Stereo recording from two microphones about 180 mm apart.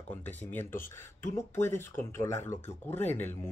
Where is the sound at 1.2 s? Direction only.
45° left (ahead or behind).